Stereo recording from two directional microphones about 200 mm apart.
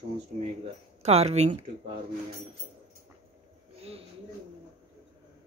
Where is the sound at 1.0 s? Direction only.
30° right (ahead or behind).